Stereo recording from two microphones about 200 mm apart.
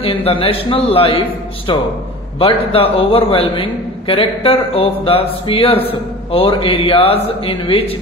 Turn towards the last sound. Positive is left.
turn(degrees=30)  # may be behind; listen again after turning